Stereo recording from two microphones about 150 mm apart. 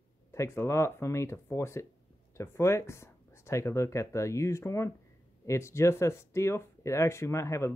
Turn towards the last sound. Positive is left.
turn(degrees=20)  # may be behind; listen again after turning